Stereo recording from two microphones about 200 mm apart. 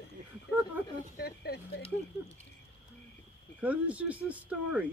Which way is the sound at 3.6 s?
5° right (ahead or behind).